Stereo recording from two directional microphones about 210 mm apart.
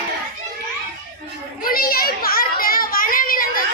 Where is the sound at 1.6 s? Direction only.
45° left (ahead or behind).